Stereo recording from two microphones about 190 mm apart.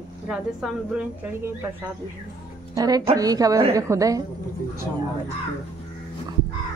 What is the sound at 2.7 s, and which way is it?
A woman's voice, 20° right (ahead or behind).